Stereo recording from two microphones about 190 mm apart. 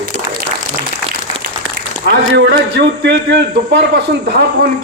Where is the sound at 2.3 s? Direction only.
70° right (ahead or behind).